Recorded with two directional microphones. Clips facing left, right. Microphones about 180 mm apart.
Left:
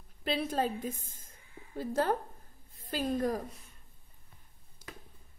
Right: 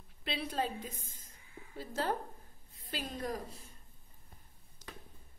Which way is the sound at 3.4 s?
30° right (ahead or behind).